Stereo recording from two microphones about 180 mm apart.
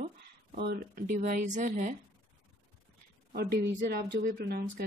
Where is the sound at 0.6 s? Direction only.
65° right (ahead or behind).